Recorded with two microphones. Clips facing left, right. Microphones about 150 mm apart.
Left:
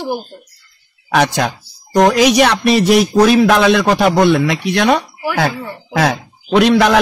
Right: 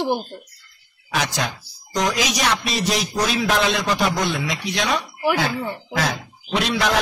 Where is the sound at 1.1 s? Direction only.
65° left (ahead or behind).